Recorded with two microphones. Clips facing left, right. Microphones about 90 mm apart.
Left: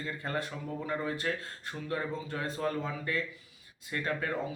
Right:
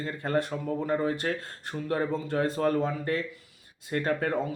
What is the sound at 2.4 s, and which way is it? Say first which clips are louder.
A man's voice: right 7 dB; 55° right (ahead or behind).